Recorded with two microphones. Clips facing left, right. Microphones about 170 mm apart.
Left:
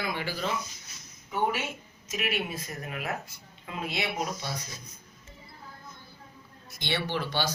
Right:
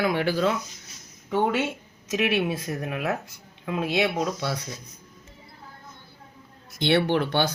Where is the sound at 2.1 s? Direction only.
75° right (ahead or behind).